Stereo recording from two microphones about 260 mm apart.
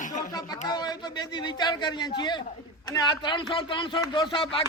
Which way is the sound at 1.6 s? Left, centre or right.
Centre.